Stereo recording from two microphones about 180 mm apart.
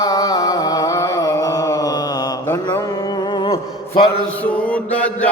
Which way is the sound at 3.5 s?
25° left (ahead or behind).